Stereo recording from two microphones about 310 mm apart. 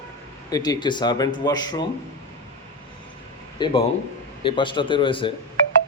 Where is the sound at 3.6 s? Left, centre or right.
Centre.